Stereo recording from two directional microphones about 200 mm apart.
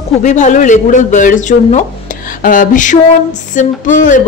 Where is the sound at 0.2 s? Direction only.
40° left (ahead or behind).